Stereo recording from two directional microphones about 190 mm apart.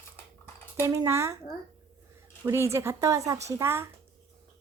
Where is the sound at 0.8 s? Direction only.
15° right (ahead or behind).